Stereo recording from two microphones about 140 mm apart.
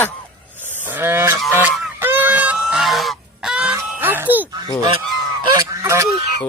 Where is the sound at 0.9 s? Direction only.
15° right (ahead or behind).